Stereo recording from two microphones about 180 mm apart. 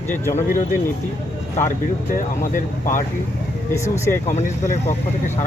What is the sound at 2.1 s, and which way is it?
Speech, 50° left (ahead or behind).